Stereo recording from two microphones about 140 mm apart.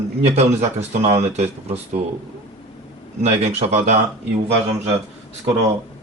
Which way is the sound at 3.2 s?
50° right (ahead or behind).